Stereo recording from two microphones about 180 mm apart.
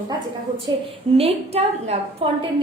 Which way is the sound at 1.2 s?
35° right (ahead or behind).